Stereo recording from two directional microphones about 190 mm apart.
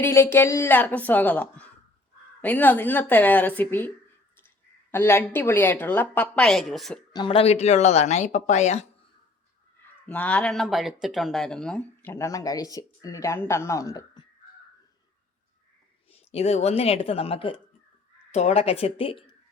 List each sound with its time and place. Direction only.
0.0 s speech: 15° left (ahead or behind)
7.1 s speech: 25° left (ahead or behind)
10.1 s speech: 5° left (ahead or behind)
16.1 s speech: 30° left (ahead or behind)